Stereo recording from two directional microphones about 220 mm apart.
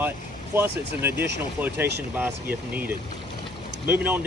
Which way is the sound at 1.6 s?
10° right (ahead or behind).